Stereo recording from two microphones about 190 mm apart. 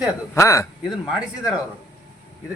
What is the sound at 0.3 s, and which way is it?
Speech, 15° left (ahead or behind).